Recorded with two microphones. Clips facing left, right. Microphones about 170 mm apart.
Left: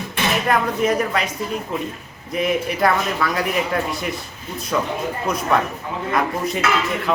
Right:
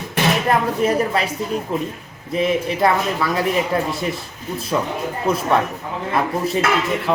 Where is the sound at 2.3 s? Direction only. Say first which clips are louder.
Right 2 dB; 30° right (ahead or behind).